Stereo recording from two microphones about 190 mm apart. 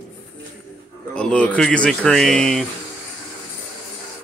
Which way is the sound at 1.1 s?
5° left (ahead or behind).